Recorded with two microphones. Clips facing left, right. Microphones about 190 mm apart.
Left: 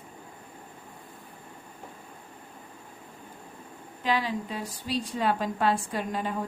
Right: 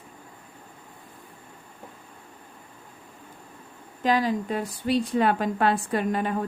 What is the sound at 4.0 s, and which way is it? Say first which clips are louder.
A woman's voice: right 5 dB; 45° right (ahead or behind).